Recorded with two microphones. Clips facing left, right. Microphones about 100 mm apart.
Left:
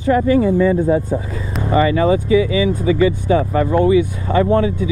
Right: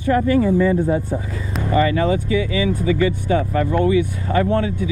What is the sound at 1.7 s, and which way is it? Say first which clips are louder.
Speech: left 3 dB; 25° left (ahead or behind).